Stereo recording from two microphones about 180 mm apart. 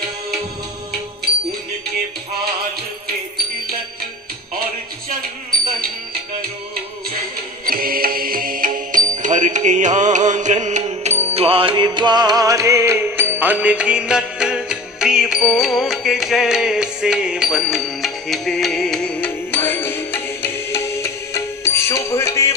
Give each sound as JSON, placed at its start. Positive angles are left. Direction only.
{"t": 7.6, "sound": "music", "side_deg": -55}